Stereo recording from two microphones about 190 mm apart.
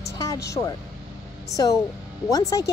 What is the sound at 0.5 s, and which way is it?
Speech, 20° left (ahead or behind).